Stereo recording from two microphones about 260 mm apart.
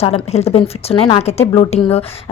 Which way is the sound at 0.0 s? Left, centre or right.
Left.